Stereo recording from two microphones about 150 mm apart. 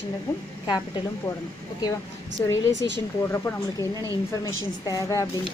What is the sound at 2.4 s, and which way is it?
Speech, 20° left (ahead or behind).